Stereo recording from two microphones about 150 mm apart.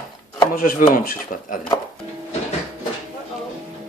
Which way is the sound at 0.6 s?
70° left (ahead or behind).